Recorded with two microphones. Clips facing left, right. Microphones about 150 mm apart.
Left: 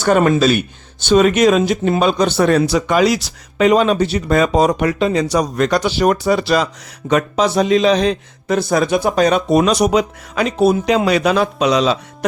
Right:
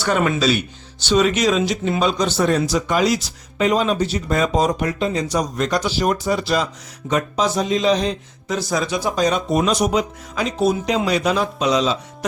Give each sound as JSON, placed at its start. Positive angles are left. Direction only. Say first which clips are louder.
{"t": 0.0, "sound": "a man's voice", "louder": "left 6 dB", "side_deg": 45}